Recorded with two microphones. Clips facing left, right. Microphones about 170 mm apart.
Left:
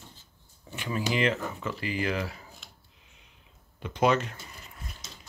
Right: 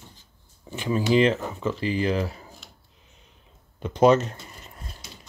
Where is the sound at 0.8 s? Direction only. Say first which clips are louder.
Right 7 dB; 30° right (ahead or behind).